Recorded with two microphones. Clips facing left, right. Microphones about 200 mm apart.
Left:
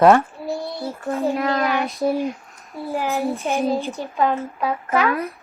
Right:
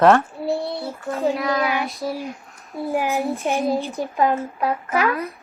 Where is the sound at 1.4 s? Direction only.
45° left (ahead or behind).